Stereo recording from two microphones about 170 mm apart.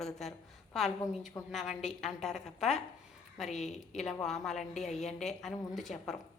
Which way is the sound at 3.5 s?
45° left (ahead or behind).